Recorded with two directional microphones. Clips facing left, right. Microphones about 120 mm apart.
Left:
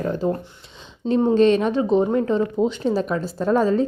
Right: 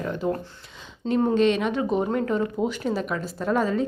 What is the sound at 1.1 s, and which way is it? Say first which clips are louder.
Speech: left 4 dB; 20° left (ahead or behind).